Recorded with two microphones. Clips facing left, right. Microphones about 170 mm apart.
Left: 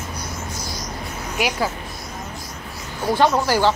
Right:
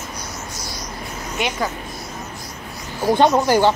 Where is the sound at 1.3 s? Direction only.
5° left (ahead or behind).